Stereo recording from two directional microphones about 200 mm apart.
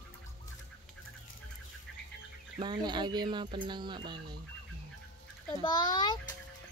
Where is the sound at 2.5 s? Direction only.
20° right (ahead or behind).